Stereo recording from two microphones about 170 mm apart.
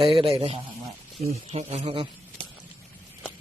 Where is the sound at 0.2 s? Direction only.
30° right (ahead or behind).